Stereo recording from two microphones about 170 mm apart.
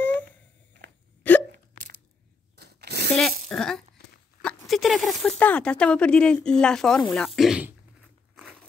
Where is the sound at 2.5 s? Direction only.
75° right (ahead or behind).